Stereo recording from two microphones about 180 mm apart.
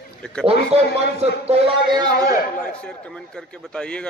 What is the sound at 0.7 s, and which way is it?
A man's voice, 35° right (ahead or behind).